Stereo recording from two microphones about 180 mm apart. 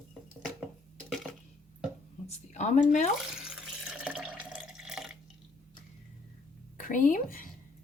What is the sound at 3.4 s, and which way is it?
Water, 5° right (ahead or behind).